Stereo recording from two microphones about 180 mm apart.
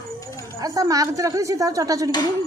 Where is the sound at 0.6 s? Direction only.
20° right (ahead or behind).